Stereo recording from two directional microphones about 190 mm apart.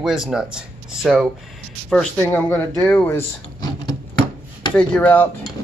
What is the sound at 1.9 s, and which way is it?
Speech, 5° left (ahead or behind).